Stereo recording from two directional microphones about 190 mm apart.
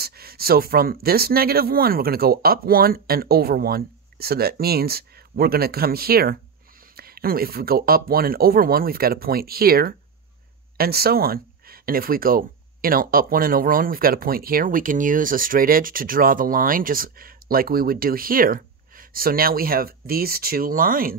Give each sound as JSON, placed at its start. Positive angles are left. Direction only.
{"t": 0.0, "sound": "speech", "side_deg": -55}